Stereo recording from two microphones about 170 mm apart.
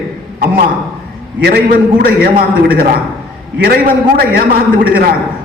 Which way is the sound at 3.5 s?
60° right (ahead or behind).